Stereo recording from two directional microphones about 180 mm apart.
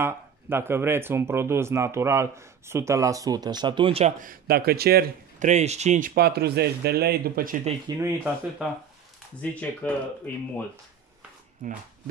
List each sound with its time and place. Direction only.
0.0 s speech: 15° right (ahead or behind); by 4.1 s 30° right (ahead or behind)
4.2 s speech: 55° right (ahead or behind)
5.4 s speech: 40° right (ahead or behind)
8.0 s speech: 10° right (ahead or behind)
9.4 s speech: 5° left (ahead or behind)